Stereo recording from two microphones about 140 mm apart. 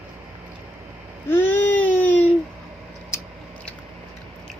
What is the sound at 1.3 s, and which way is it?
Baby cry, 15° left (ahead or behind).